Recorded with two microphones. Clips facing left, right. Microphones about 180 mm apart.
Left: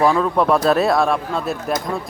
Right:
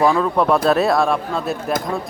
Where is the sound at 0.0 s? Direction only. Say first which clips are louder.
Even; centre (ahead or behind).